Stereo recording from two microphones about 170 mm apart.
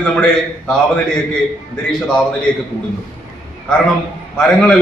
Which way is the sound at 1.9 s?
5° left (ahead or behind).